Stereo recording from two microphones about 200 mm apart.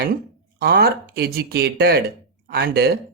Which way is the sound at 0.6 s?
50° right (ahead or behind).